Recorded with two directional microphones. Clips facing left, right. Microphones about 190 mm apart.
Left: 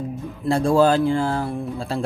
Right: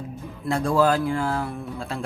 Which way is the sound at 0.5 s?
30° left (ahead or behind).